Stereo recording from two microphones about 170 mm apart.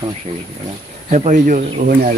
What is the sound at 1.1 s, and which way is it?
Speech, 45° right (ahead or behind).